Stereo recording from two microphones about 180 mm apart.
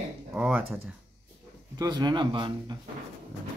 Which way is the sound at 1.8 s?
25° right (ahead or behind).